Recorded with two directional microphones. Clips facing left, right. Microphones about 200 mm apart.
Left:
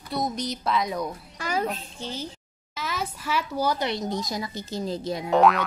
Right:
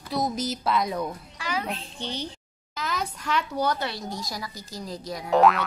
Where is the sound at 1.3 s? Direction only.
45° left (ahead or behind).